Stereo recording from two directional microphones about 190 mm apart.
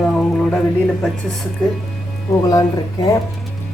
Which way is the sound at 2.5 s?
20° left (ahead or behind).